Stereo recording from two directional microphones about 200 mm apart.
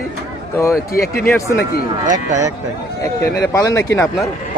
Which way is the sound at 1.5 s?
50° left (ahead or behind).